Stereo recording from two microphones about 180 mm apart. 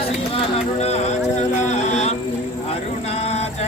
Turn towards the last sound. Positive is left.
turn(degrees=35)  # may be behind; listen again after turning